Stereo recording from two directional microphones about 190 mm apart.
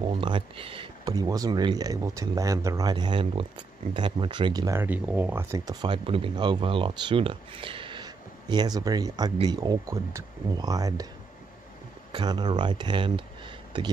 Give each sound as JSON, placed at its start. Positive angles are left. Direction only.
{"t": 0.0, "sound": "speech", "side_deg": -25}
{"t": 12.1, "sound": "speech", "side_deg": -25}